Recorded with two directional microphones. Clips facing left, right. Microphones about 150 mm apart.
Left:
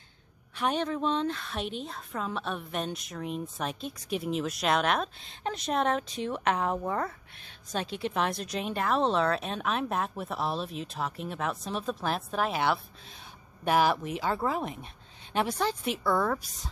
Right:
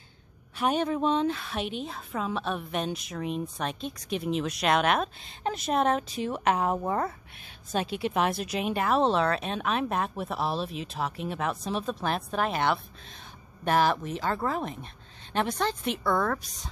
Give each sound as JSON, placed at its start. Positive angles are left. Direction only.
{"t": 0.6, "sound": "a woman's voice", "side_deg": -10}